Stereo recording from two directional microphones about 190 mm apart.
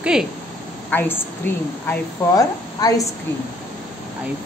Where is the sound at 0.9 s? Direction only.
10° left (ahead or behind).